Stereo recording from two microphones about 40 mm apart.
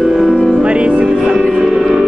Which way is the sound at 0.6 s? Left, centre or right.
Right.